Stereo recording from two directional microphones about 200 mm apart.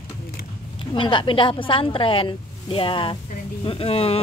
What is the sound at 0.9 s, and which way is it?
A woman's voice, 25° left (ahead or behind).